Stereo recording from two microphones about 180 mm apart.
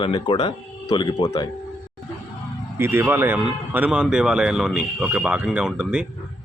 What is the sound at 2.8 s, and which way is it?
Speech, 10° right (ahead or behind).